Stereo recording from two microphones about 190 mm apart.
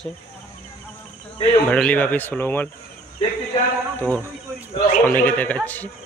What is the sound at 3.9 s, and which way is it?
Speech, 10° left (ahead or behind).